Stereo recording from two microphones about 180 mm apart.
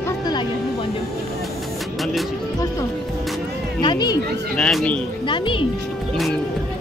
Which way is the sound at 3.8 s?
25° left (ahead or behind).